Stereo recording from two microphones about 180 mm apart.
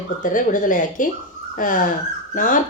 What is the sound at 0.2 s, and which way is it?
Speech, 45° left (ahead or behind).